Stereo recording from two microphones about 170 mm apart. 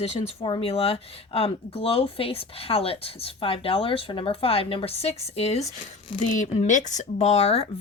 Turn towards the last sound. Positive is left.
turn(degrees=35)  # may be behind; listen again after turning